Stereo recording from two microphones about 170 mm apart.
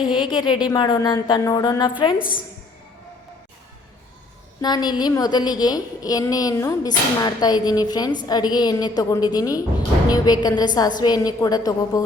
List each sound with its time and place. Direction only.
0.1 s a woman's voice: 30° left (ahead or behind)
2.1 s a woman's voice: 55° left (ahead or behind)
4.6 s a woman's voice: 25° left (ahead or behind)